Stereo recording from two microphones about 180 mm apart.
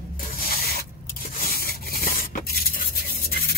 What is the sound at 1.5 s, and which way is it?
Rub, 55° left (ahead or behind).